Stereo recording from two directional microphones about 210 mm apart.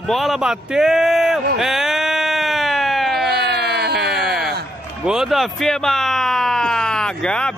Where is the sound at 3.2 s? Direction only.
50° right (ahead or behind).